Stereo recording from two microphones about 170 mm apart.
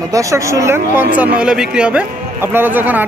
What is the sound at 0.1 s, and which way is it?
Speech, 20° right (ahead or behind).